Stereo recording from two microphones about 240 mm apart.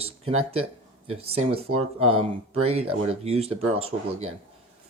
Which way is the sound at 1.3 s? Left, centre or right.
Right.